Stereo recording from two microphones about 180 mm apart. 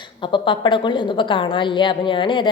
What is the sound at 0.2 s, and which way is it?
A woman's voice, 25° left (ahead or behind).